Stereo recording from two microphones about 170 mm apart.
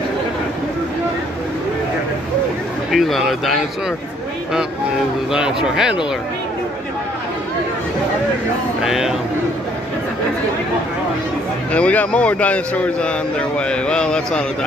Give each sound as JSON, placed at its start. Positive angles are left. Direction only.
{"t": 2.9, "sound": "speech", "side_deg": 0}
{"t": 5.3, "sound": "speech", "side_deg": -5}
{"t": 8.8, "sound": "speech", "side_deg": 0}
{"t": 11.7, "sound": "a man's voice", "side_deg": 10}